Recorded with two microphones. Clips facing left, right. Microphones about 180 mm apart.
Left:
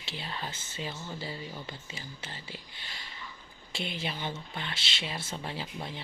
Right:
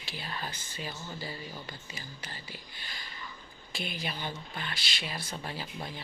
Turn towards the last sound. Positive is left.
turn(degrees=25)  # may be behind; listen again after turning